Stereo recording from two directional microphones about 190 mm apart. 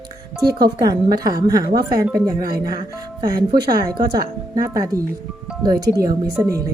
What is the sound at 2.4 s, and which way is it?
Speech, 50° right (ahead or behind).